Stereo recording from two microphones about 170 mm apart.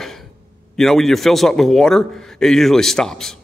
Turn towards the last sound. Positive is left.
turn(degrees=5)  # may be behind; listen again after turning